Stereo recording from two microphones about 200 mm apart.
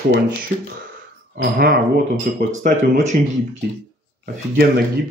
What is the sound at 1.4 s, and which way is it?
Speech, 50° right (ahead or behind).